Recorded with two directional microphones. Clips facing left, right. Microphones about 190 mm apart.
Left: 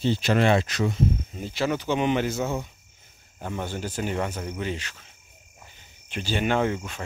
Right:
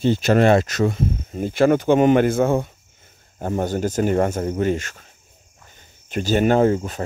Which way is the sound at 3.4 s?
45° right (ahead or behind).